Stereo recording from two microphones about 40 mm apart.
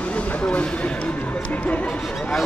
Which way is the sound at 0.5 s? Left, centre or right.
Left.